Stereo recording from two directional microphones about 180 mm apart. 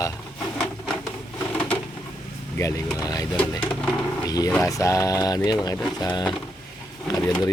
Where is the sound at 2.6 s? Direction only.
20° left (ahead or behind).